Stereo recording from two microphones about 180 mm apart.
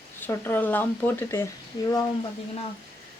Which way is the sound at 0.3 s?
15° left (ahead or behind).